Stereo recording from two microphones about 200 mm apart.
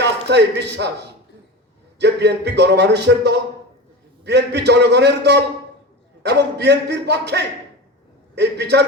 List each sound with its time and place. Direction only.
0.0 s a man's voice: 60° right (ahead or behind)
2.0 s speech: 55° right (ahead or behind)